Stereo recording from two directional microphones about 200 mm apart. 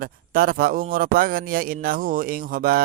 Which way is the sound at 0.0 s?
45° right (ahead or behind).